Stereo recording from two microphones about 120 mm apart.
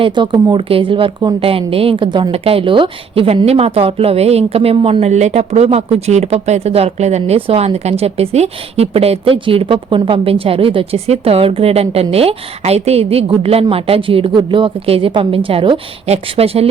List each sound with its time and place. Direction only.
0.0 s a woman's voice: 45° right (ahead or behind)
16.0 s a woman's voice: 60° right (ahead or behind)